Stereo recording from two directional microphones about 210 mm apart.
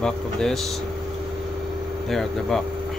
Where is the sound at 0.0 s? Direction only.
5° left (ahead or behind).